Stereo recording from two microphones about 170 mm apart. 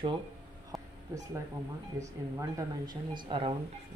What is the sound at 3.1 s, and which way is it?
Speech, 30° right (ahead or behind).